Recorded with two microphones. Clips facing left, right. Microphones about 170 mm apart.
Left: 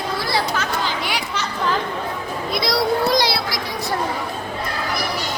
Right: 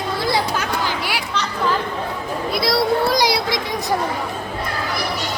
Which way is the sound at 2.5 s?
5° right (ahead or behind).